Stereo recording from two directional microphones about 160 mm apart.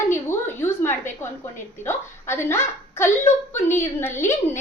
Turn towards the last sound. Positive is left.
turn(degrees=15)  # may be behind; listen again after turning